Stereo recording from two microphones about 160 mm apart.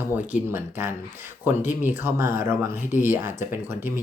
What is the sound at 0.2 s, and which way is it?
Speech, 10° right (ahead or behind).